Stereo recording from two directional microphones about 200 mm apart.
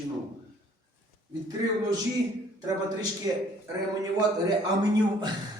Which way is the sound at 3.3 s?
20° right (ahead or behind).